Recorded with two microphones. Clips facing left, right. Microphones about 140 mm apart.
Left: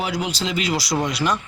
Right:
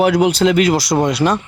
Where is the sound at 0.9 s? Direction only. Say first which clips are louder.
Right 7 dB; 35° right (ahead or behind).